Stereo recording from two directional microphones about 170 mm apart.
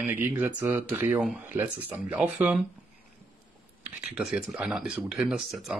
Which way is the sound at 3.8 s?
5° right (ahead or behind).